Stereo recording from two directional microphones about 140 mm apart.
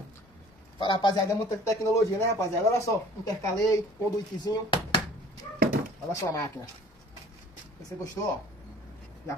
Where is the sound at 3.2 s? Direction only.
25° left (ahead or behind).